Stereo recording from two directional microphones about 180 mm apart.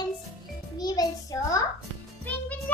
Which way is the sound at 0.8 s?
20° left (ahead or behind).